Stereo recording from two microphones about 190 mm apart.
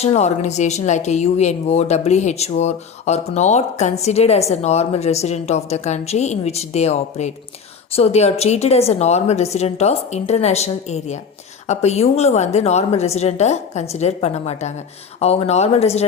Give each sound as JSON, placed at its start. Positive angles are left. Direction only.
{"t": 0.0, "sound": "speech", "side_deg": 35}